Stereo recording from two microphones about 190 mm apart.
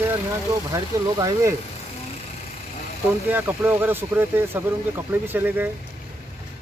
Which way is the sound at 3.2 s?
10° right (ahead or behind).